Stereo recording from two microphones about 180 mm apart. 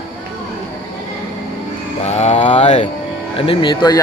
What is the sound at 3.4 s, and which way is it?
Speech, 25° left (ahead or behind).